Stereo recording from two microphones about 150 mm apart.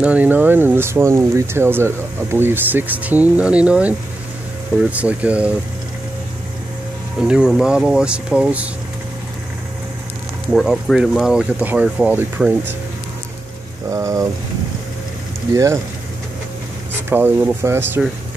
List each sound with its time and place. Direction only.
0.0 s speech: 10° right (ahead or behind)
4.9 s speech: 10° right (ahead or behind)
7.2 s speech: 5° right (ahead or behind)
10.5 s speech: centre (ahead or behind)
13.8 s a sound: 20° right (ahead or behind)
15.5 s a sound: 20° right (ahead or behind)
17.1 s speech: 15° right (ahead or behind)